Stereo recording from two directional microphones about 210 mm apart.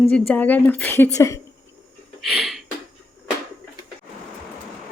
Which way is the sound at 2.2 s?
Centre (ahead or behind).